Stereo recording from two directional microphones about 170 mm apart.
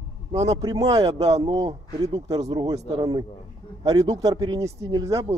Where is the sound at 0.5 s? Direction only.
20° right (ahead or behind).